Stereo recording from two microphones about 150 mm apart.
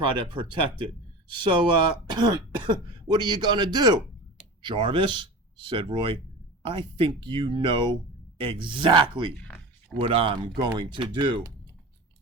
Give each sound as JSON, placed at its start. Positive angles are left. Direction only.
{"t": 0.0, "sound": "speech", "side_deg": -35}